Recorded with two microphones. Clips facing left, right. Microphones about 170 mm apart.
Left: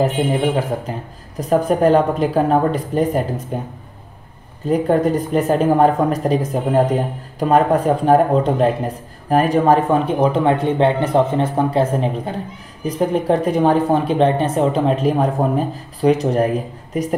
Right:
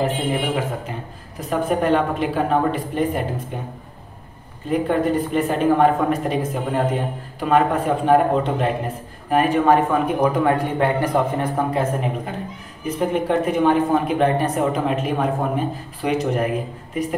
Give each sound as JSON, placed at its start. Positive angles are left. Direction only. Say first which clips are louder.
{"t": 0.0, "sound": "a man's voice", "louder": "left 5 dB", "side_deg": 35}